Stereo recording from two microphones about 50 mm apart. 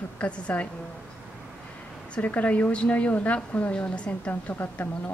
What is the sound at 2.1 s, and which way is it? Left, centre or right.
A woman's voice, left.